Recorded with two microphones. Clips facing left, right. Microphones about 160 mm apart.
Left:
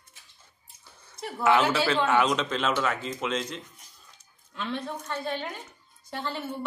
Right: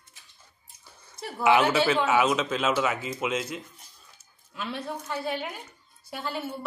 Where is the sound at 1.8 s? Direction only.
5° right (ahead or behind).